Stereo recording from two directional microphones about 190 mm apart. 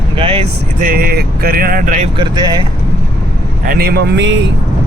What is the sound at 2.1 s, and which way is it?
Speech, 20° right (ahead or behind).